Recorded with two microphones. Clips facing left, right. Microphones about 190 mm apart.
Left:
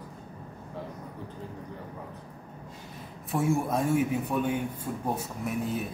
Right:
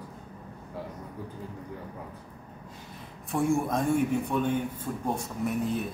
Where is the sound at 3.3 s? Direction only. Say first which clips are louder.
Right 1 dB; centre (ahead or behind).